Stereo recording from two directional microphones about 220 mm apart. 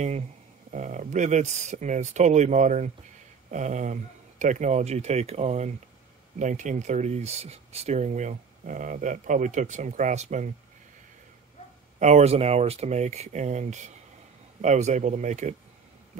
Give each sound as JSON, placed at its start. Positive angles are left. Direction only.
{"t": 0.7, "sound": "speech", "side_deg": -35}
{"t": 12.0, "sound": "speech", "side_deg": -30}